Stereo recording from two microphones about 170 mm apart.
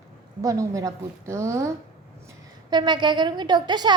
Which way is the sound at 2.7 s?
25° right (ahead or behind).